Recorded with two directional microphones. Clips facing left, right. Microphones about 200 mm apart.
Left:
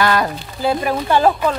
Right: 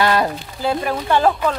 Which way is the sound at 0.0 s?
30° right (ahead or behind).